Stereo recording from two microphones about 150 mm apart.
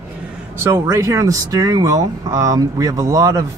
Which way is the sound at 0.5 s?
15° right (ahead or behind).